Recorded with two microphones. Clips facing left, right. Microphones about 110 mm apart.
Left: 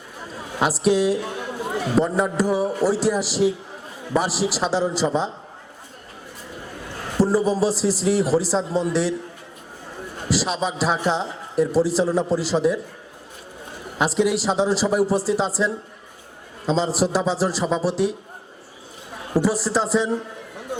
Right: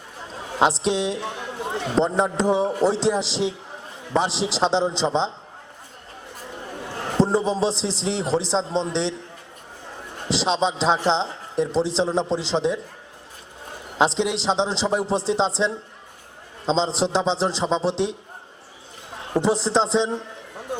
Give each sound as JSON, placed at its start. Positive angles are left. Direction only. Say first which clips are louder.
{"t": 0.3, "sound": "a man's voice", "louder": "right 3 dB", "side_deg": -25}
{"t": 7.2, "sound": "a man's voice", "louder": "left 2 dB", "side_deg": -25}
{"t": 10.2, "sound": "a man's voice", "louder": "right 2 dB", "side_deg": -25}
{"t": 14.0, "sound": "a man's voice", "louder": "left 1 dB", "side_deg": -25}
{"t": 19.3, "sound": "a man's voice", "louder": "even", "side_deg": -25}